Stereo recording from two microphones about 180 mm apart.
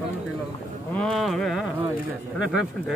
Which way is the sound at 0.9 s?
Centre (ahead or behind).